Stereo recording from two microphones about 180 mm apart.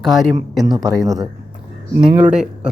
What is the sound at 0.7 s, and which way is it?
Speech, 20° right (ahead or behind).